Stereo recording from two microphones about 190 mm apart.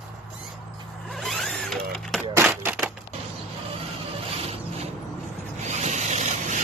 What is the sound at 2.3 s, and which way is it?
Typewriter, 10° right (ahead or behind).